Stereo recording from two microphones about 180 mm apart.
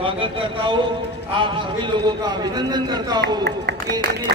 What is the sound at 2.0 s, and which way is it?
Speech, 25° right (ahead or behind).